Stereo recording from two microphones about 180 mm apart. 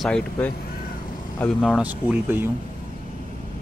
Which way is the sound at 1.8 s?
10° right (ahead or behind).